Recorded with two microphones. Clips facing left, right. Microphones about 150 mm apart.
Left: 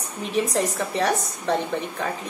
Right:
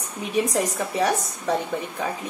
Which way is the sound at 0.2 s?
10° right (ahead or behind).